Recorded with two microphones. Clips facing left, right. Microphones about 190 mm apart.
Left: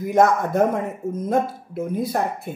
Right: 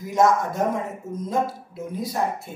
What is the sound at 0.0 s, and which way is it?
Speech, 60° left (ahead or behind).